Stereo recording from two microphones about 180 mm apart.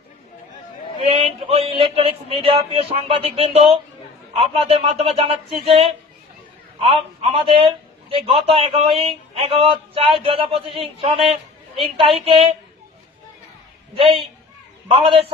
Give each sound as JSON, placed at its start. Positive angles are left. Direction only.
{"t": 1.0, "sound": "speech", "side_deg": -30}
{"t": 13.9, "sound": "speech", "side_deg": -30}